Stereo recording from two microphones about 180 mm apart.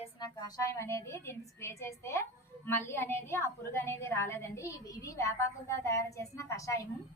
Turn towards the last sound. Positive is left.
turn(degrees=15)  # may be behind; listen again after turning